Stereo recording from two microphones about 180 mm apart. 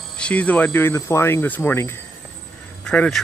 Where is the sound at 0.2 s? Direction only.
10° left (ahead or behind).